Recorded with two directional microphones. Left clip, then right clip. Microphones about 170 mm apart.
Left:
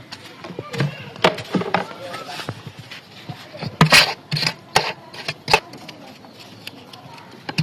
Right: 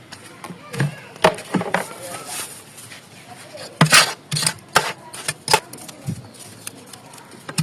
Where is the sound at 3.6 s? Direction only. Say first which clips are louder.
Left 1 dB; 15° left (ahead or behind).